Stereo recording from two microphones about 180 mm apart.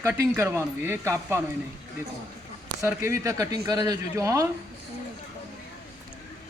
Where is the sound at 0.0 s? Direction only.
15° right (ahead or behind).